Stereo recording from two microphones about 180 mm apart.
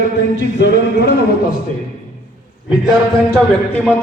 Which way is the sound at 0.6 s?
70° left (ahead or behind).